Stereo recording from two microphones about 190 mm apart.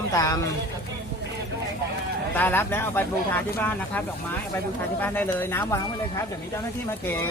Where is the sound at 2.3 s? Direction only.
10° left (ahead or behind).